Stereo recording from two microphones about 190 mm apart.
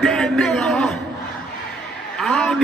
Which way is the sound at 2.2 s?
5° left (ahead or behind).